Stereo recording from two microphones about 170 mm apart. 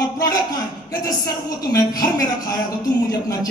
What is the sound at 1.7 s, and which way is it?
Speech, 20° left (ahead or behind).